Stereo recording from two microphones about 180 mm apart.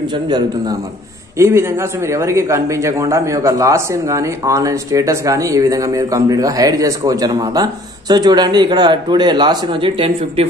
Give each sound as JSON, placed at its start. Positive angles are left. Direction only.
{"t": 1.4, "sound": "a man's voice", "side_deg": -15}